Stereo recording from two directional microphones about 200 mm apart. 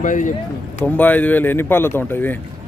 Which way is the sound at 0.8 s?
10° left (ahead or behind).